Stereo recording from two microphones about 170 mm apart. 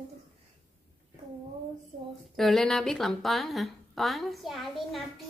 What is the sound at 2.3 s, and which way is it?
A woman's voice, centre (ahead or behind).